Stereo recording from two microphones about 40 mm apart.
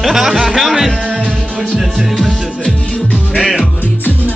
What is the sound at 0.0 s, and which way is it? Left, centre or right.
Music, centre.